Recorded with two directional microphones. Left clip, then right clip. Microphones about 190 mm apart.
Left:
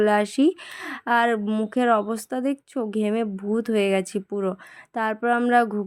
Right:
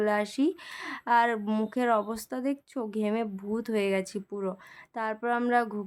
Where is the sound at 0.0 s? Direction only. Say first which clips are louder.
Left 7 dB; 25° left (ahead or behind).